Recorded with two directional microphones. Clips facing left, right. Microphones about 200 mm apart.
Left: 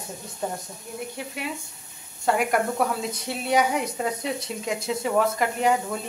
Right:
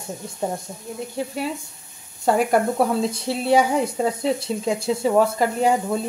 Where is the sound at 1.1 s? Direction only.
35° right (ahead or behind).